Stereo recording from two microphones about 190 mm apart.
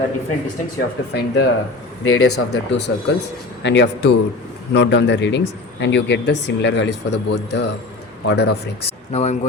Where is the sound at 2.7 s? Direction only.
65° left (ahead or behind).